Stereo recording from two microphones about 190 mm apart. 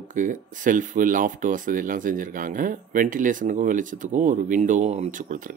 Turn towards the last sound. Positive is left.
turn(degrees=-45)  # may be behind; listen again after turning